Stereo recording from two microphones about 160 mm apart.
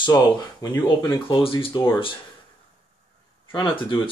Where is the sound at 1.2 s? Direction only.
35° left (ahead or behind).